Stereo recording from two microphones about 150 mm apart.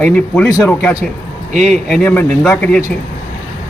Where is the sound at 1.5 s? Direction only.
5° left (ahead or behind).